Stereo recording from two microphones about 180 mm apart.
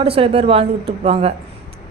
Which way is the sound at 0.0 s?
30° right (ahead or behind).